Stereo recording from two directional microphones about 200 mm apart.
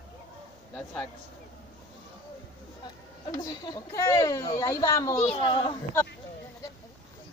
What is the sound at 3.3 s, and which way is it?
Speech, 20° left (ahead or behind).